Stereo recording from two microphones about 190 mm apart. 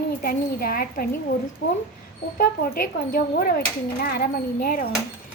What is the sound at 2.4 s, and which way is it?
Speech, 45° left (ahead or behind).